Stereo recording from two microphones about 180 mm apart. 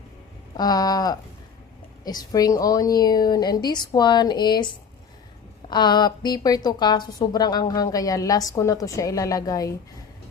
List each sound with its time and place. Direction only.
0.5 s a woman's voice: 20° left (ahead or behind)